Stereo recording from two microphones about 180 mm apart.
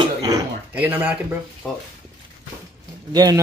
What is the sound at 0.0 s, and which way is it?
Throat clearing, 20° right (ahead or behind).